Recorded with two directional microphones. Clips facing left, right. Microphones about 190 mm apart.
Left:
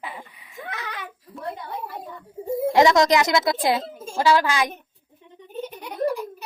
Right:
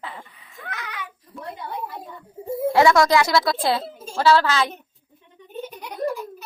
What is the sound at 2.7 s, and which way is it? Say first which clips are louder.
A woman's voice: even; 20° left (ahead or behind).